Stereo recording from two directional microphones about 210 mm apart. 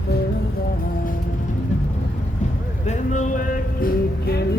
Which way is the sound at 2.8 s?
35° left (ahead or behind).